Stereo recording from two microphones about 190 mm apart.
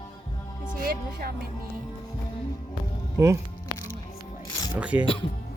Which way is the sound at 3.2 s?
15° right (ahead or behind).